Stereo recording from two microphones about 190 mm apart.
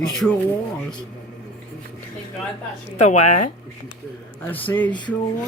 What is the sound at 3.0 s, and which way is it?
Speech, 40° left (ahead or behind).